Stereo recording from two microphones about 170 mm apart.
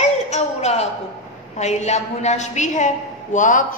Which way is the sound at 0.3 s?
40° left (ahead or behind).